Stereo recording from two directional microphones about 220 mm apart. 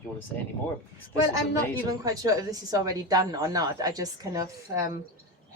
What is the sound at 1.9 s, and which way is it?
A woman's voice, 15° right (ahead or behind).